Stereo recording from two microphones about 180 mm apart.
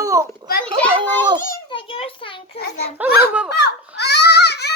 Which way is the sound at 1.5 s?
30° left (ahead or behind).